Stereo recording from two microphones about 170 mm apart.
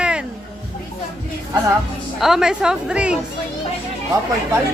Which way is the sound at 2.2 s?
5° right (ahead or behind).